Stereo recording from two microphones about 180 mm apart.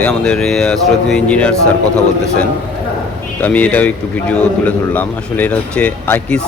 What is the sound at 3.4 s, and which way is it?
Speech, 10° left (ahead or behind).